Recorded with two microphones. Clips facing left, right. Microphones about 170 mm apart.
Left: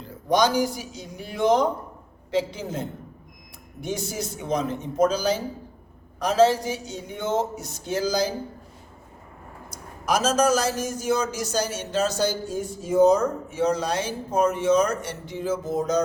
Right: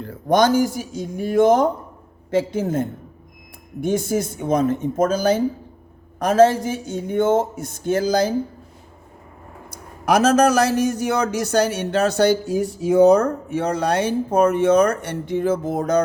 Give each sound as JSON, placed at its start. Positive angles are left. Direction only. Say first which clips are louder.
{"t": 0.0, "sound": "speech", "louder": "right 4 dB", "side_deg": -55}
{"t": 9.6, "sound": "a man's voice", "louder": "right 6 dB", "side_deg": -65}